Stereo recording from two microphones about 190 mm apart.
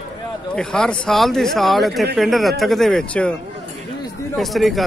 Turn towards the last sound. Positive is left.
turn(degrees=0)  # may be behind; listen again after turning